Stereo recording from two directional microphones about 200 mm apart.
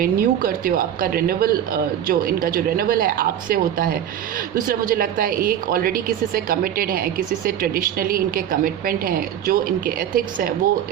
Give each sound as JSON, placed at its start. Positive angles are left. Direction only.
{"t": 0.0, "sound": "a woman's voice", "side_deg": -45}